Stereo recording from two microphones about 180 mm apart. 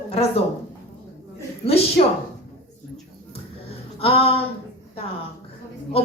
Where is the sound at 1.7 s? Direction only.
35° left (ahead or behind).